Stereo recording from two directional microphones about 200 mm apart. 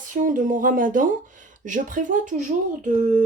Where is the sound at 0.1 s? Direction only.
40° right (ahead or behind).